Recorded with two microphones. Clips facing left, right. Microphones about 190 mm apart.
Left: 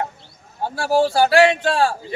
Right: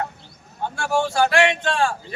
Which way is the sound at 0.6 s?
35° left (ahead or behind).